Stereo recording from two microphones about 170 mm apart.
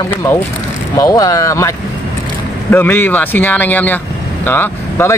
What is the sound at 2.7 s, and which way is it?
Speech, 10° left (ahead or behind).